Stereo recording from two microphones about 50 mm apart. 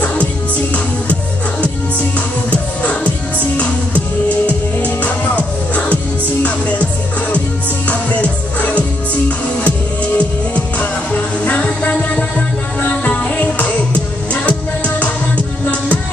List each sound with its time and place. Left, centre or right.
0.0 s music: left
1.6 s music: left